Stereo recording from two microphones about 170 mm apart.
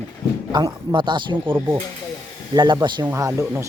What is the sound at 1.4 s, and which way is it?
Speech, 15° right (ahead or behind).